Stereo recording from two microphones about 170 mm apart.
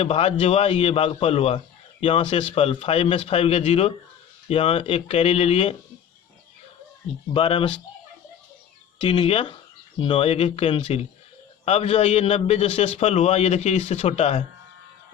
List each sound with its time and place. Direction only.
0.0 s a man's voice: 35° left (ahead or behind)
7.3 s a man's voice: 30° left (ahead or behind)
9.0 s a man's voice: 30° left (ahead or behind)